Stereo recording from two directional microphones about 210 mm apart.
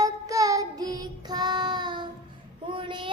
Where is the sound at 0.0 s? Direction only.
15° right (ahead or behind).